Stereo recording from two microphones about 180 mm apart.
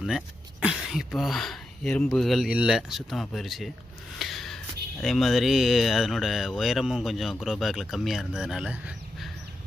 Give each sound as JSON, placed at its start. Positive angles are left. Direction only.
{"t": 0.0, "sound": "speech", "side_deg": 0}